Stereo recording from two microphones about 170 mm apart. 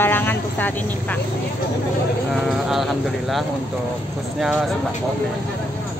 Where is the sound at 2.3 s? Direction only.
Centre (ahead or behind).